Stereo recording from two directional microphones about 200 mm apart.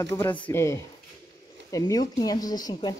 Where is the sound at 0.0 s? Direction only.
15° left (ahead or behind).